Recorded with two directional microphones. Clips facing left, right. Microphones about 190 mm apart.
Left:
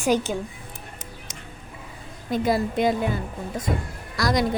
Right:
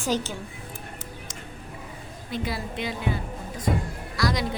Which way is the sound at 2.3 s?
45° left (ahead or behind).